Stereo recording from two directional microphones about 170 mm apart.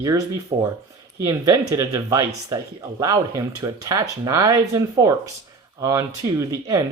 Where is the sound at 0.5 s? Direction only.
30° right (ahead or behind).